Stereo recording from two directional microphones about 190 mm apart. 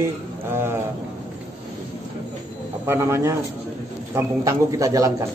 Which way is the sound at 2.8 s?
15° right (ahead or behind).